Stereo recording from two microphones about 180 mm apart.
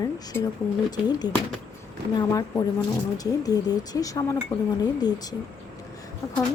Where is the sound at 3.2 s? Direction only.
20° left (ahead or behind).